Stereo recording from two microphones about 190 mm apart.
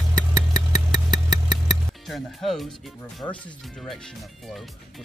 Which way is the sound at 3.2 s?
15° left (ahead or behind).